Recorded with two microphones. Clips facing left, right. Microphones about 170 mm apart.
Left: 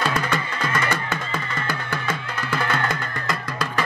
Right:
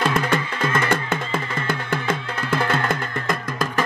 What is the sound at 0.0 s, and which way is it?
Music, 50° right (ahead or behind).